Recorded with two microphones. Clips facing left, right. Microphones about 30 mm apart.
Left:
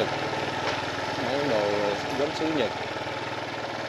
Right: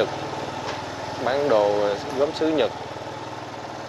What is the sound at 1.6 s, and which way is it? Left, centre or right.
Speech, left.